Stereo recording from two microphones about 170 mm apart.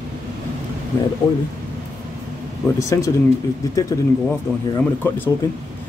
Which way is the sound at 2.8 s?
20° left (ahead or behind).